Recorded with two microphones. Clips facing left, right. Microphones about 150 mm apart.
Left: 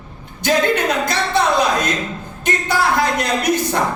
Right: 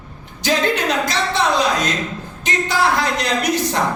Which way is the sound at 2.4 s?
55° left (ahead or behind).